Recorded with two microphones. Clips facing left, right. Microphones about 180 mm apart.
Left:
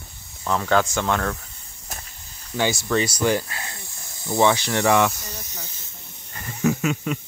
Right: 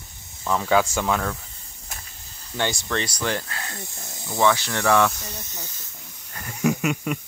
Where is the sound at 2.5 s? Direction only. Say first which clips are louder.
Left 4 dB; 5° left (ahead or behind).